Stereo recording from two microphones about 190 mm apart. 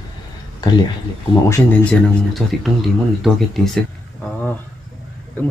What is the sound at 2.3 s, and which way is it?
Speech, centre (ahead or behind).